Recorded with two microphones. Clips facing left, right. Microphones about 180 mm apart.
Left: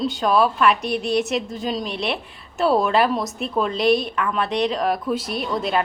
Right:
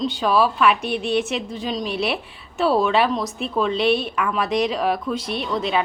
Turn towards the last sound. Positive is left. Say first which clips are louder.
# even
turn(degrees=0)  # may be behind; listen again after turning